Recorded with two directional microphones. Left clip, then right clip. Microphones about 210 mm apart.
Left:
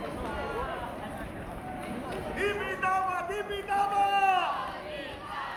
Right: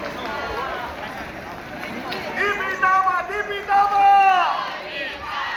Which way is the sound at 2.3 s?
30° right (ahead or behind).